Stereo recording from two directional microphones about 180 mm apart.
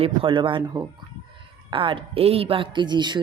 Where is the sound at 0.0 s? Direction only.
30° right (ahead or behind).